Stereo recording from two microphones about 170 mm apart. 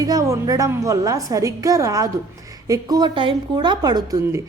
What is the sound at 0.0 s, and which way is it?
A woman's voice, 20° right (ahead or behind).